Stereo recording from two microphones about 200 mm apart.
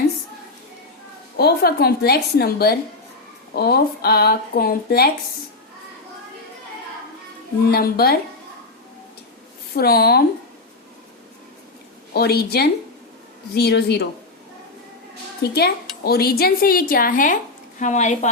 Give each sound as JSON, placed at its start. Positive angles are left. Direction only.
{"t": 1.4, "sound": "speech", "side_deg": 50}
{"t": 7.7, "sound": "speech", "side_deg": 50}
{"t": 9.7, "sound": "speech", "side_deg": 50}
{"t": 12.1, "sound": "a woman's voice", "side_deg": 50}
{"t": 15.4, "sound": "a woman's voice", "side_deg": 55}